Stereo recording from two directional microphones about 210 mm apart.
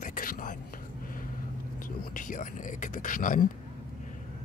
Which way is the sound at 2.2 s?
40° left (ahead or behind).